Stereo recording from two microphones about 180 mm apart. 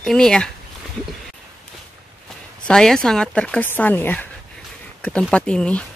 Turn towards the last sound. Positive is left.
turn(degrees=5)  # may be behind; listen again after turning